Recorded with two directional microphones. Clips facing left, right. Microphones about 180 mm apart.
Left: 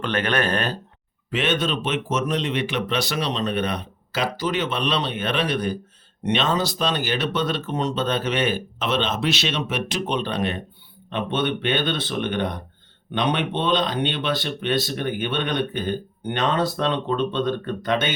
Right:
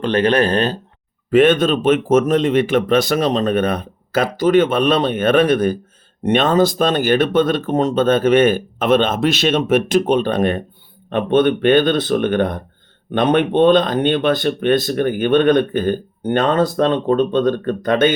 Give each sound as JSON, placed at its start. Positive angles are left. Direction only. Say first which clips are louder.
{"t": 0.0, "sound": "speech", "louder": "right 8 dB", "side_deg": -30}
{"t": 1.3, "sound": "speech", "louder": "right 11 dB", "side_deg": -50}